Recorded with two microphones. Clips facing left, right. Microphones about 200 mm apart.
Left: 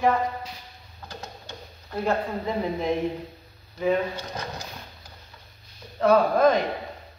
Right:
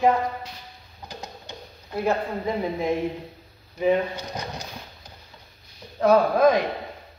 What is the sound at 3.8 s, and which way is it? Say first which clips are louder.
Speech: right 2 dB; 15° right (ahead or behind).